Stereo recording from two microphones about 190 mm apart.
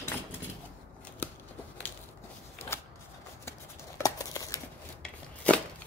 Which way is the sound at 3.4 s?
15° left (ahead or behind).